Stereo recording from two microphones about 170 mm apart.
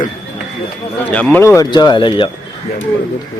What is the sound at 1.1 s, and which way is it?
Speech, 10° left (ahead or behind).